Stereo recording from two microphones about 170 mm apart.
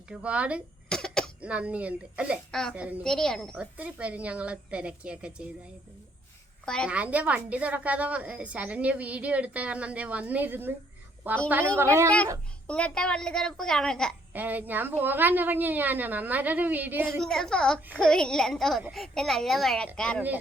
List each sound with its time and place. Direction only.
0.1 s a woman's voice: 5° right (ahead or behind)
0.9 s cough: 5° left (ahead or behind)
1.4 s a woman's voice: 5° right (ahead or behind)
3.5 s a woman's voice: 10° right (ahead or behind)
6.8 s a woman's voice: 10° right (ahead or behind)
12.6 s a child's voice: 5° left (ahead or behind)
14.3 s a woman's voice: 10° right (ahead or behind)
17.2 s a child's voice: centre (ahead or behind)